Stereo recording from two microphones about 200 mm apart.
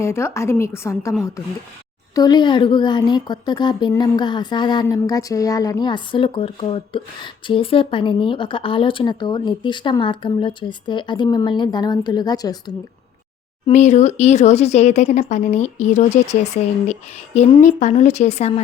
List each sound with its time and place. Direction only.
0.0 s a woman's voice: 15° left (ahead or behind)
2.1 s speech: 20° left (ahead or behind)
13.7 s speech: 35° left (ahead or behind)